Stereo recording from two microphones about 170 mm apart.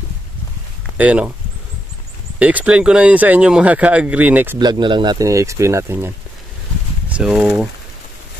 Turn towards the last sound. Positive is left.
turn(degrees=-5)  # may be behind; listen again after turning